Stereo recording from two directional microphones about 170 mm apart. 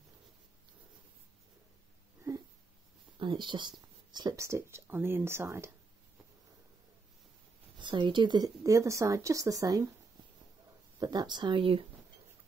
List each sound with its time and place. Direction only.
3.2 s speech: 30° right (ahead or behind)
7.8 s a woman's voice: 25° right (ahead or behind)
11.0 s a woman's voice: 25° right (ahead or behind)